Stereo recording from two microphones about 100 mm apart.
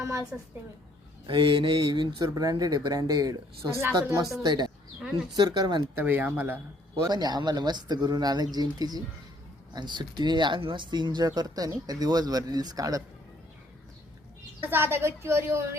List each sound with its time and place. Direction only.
0.0 s a sound: 30° right (ahead or behind)
1.3 s speech: 50° right (ahead or behind); by 4.3 s 30° right (ahead or behind)
4.4 s speech: 45° right (ahead or behind)
6.0 s speech: 20° right (ahead or behind)
7.1 s speech: 45° right (ahead or behind)
14.6 s a woman's voice: 20° right (ahead or behind)